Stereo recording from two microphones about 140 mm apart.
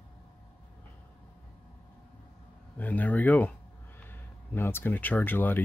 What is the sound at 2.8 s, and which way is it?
Speech, 10° left (ahead or behind).